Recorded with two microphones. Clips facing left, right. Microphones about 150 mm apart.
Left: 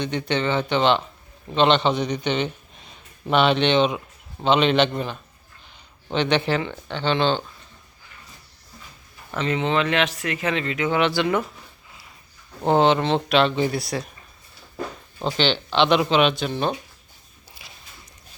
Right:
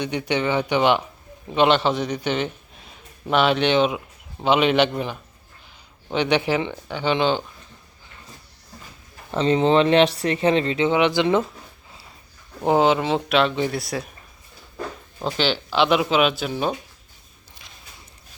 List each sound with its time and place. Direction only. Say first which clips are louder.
0.0 s speech: right 1 dB; 10° right (ahead or behind)
9.3 s speech: right 5 dB; 30° right (ahead or behind)
10.9 s speech: right 1 dB; 20° right (ahead or behind)
12.6 s speech: even; 5° right (ahead or behind)
15.2 s speech: left 1 dB; 5° right (ahead or behind)
17.6 s a sound: left 2 dB; 5° left (ahead or behind)